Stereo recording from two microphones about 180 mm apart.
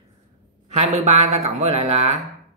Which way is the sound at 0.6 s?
40° right (ahead or behind).